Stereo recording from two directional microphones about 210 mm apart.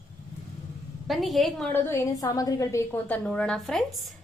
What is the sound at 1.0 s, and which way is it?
A woman's voice, centre (ahead or behind).